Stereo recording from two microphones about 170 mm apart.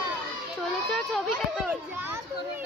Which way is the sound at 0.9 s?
Centre (ahead or behind).